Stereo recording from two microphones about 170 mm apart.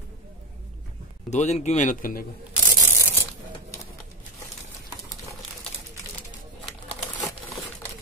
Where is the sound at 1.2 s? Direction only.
40° left (ahead or behind).